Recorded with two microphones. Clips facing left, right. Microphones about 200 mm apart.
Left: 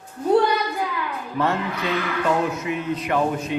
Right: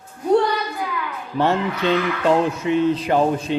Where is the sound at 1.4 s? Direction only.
30° right (ahead or behind).